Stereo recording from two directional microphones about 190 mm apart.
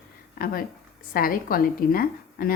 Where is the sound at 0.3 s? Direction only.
50° left (ahead or behind).